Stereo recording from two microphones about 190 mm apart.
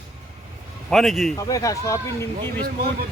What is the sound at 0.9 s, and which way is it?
Speech, centre (ahead or behind).